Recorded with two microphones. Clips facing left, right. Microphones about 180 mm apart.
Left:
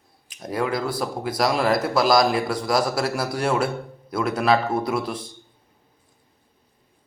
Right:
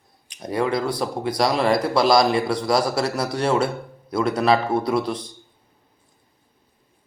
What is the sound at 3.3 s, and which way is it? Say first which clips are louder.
Speech: right 2 dB; 25° right (ahead or behind).